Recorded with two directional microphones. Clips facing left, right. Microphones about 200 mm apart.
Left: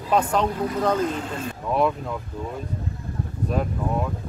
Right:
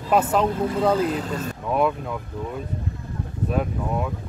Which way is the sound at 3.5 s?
5° right (ahead or behind).